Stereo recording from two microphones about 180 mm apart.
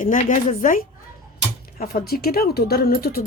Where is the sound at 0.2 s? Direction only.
45° left (ahead or behind).